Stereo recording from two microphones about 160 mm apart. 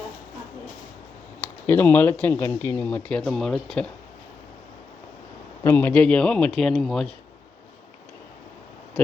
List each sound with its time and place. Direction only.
1.4 s speech: 10° left (ahead or behind)
5.6 s speech: 10° left (ahead or behind)